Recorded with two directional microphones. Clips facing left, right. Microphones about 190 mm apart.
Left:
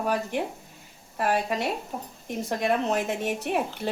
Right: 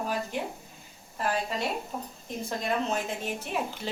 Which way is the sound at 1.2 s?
65° left (ahead or behind).